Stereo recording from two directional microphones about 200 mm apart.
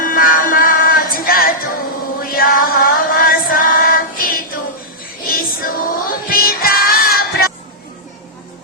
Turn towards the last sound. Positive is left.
turn(degrees=50)  # may be behind; listen again after turning